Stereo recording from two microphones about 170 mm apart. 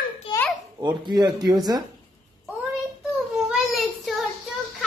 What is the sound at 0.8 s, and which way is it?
Speech, 25° right (ahead or behind).